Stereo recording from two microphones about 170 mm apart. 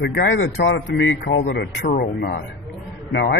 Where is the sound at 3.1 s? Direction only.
85° left.